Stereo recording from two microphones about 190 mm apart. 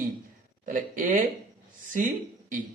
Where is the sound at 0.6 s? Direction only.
45° right (ahead or behind).